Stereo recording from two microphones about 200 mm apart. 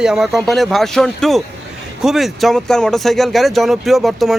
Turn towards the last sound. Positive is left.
turn(degrees=0)  # may be behind; listen again after turning